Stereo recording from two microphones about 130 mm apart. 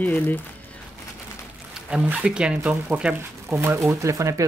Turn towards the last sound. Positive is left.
turn(degrees=-25)  # may be behind; listen again after turning